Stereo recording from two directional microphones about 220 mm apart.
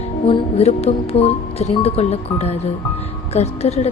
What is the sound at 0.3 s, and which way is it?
Speech, 25° left (ahead or behind).